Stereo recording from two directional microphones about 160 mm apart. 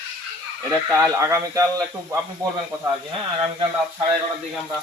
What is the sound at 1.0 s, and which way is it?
Speech, 20° right (ahead or behind).